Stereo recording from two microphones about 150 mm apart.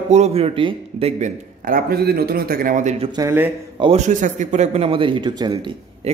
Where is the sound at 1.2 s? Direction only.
70° right (ahead or behind).